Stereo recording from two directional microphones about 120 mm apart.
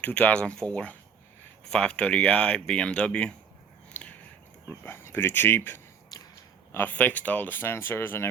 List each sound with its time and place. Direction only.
0.0 s speech: 10° left (ahead or behind)
3.9 s biting: 15° left (ahead or behind)
4.8 s speech: 20° left (ahead or behind)